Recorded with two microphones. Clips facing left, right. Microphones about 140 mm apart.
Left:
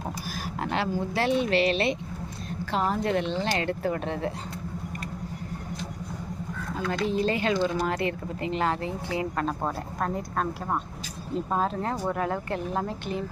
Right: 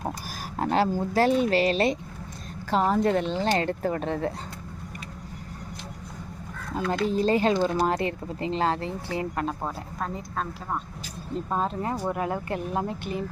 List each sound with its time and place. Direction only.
0.6 s a woman's voice: 40° right (ahead or behind)
6.8 s speech: 35° right (ahead or behind)
11.5 s speech: centre (ahead or behind)